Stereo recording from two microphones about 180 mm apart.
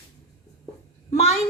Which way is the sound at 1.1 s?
35° left (ahead or behind).